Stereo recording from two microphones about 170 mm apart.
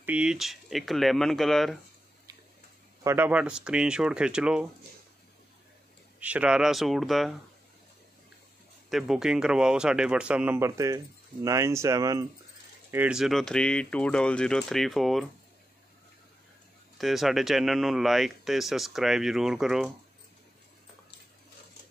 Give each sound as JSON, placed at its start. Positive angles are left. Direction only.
{"t": 0.0, "sound": "speech", "side_deg": -5}
{"t": 3.0, "sound": "speech", "side_deg": -15}
{"t": 6.1, "sound": "speech", "side_deg": -5}
{"t": 8.9, "sound": "speech", "side_deg": -5}
{"t": 12.9, "sound": "speech", "side_deg": -5}
{"t": 17.0, "sound": "speech", "side_deg": 0}